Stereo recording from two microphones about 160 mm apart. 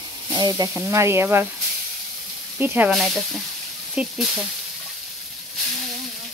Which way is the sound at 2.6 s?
15° right (ahead or behind).